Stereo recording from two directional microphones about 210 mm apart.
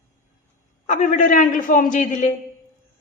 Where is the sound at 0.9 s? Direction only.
35° left (ahead or behind).